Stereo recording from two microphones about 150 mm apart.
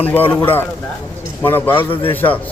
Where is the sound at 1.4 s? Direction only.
15° left (ahead or behind).